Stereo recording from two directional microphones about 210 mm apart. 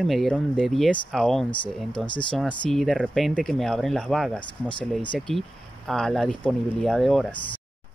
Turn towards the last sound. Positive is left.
turn(degrees=0)  # may be behind; listen again after turning